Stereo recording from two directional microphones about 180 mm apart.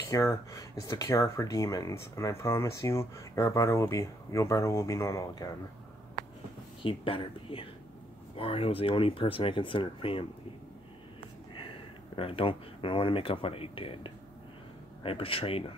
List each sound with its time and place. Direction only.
0.1 s speech: 15° left (ahead or behind)
6.8 s speech: 30° left (ahead or behind)
12.2 s speech: 30° left (ahead or behind)